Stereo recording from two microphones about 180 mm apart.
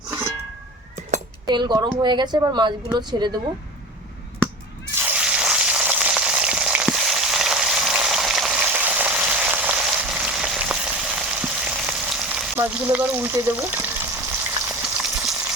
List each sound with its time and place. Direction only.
1.5 s speech: 25° right (ahead or behind)
4.9 s frying: 10° right (ahead or behind)
12.5 s a sound: 10° right (ahead or behind)